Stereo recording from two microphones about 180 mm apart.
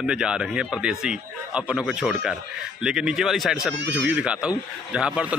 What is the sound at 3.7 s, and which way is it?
Speech, 75° right (ahead or behind).